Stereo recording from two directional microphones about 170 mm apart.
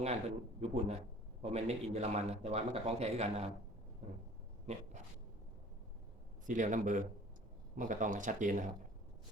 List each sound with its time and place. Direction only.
0.0 s speech: 40° right (ahead or behind)
4.7 s speech: 40° right (ahead or behind)
6.4 s speech: 50° right (ahead or behind)